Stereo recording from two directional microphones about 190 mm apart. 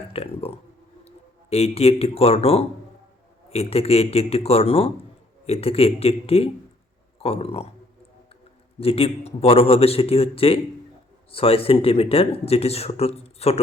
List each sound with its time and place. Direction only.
0.1 s speech: 30° left (ahead or behind)
8.8 s speech: 30° left (ahead or behind)